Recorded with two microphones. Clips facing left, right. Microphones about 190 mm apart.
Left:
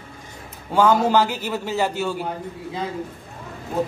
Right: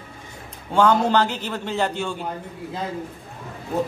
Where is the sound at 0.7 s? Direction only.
5° left (ahead or behind).